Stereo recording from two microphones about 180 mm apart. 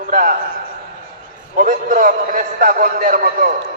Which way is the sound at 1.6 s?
50° right (ahead or behind).